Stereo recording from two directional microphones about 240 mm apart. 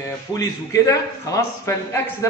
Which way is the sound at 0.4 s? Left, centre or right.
Centre.